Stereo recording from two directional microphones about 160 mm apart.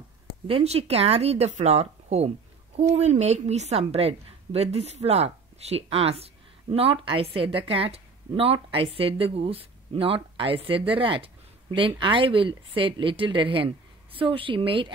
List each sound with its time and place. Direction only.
0.5 s speech: 35° right (ahead or behind)